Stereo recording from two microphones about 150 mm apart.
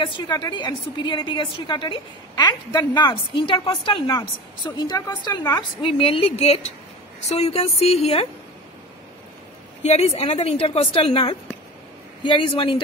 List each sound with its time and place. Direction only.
0.0 s a woman's voice: 30° left (ahead or behind)
9.8 s a woman's voice: 45° left (ahead or behind)